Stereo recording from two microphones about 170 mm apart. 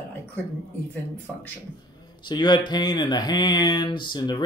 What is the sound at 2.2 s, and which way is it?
Speech, 25° left (ahead or behind).